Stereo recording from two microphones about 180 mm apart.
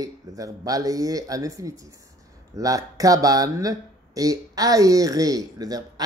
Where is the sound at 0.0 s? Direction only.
20° right (ahead or behind).